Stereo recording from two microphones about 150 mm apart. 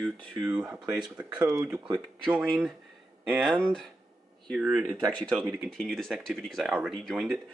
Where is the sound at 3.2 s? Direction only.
Centre (ahead or behind).